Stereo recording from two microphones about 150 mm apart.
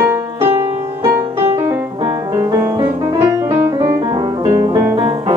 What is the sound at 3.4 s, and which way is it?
Music, 20° right (ahead or behind).